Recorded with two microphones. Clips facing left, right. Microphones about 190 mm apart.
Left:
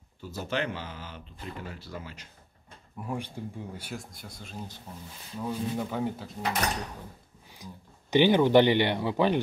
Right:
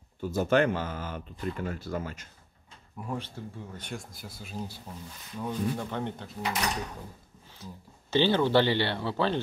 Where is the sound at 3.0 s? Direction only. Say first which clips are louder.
Left 1 dB; 10° left (ahead or behind); by 4.8 s 10° right (ahead or behind).